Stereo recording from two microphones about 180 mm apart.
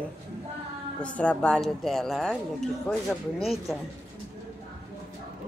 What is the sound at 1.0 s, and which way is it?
Speech, 5° left (ahead or behind).